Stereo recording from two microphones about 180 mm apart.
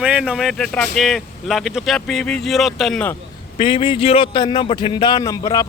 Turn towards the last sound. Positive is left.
turn(degrees=20)  # may be behind; listen again after turning